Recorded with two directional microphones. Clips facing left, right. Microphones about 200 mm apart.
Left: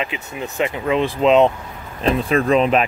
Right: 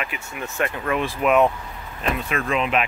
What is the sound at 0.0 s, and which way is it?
Speech, 20° left (ahead or behind).